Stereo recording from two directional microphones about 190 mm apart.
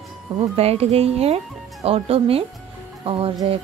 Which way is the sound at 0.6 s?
35° right (ahead or behind).